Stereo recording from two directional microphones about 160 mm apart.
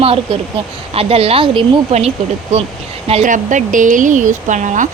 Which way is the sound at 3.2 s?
55° right (ahead or behind).